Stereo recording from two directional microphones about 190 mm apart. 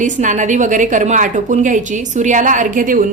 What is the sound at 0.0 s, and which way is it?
A woman's voice, 40° right (ahead or behind).